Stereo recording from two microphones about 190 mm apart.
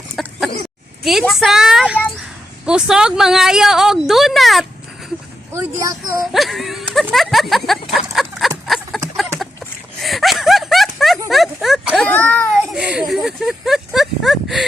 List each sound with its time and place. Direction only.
0.2 s chicken: centre (ahead or behind)
1.0 s a woman's voice: centre (ahead or behind)
5.5 s speech: 15° right (ahead or behind)
6.3 s a woman's voice: centre (ahead or behind)
7.9 s a sound: centre (ahead or behind)
10.0 s a sound: centre (ahead or behind)
12.0 s a child's voice: 10° left (ahead or behind)
12.7 s speech: 5° right (ahead or behind)